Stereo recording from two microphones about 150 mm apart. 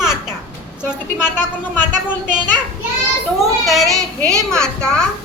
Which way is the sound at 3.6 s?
Centre (ahead or behind).